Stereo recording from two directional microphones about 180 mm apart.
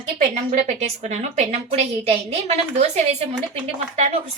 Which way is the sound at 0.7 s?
40° right (ahead or behind).